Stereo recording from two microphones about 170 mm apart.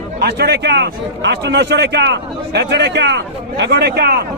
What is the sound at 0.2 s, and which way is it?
A man's voice, 75° right (ahead or behind).